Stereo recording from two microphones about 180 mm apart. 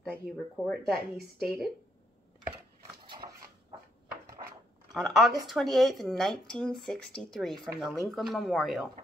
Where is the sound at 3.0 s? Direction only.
25° right (ahead or behind).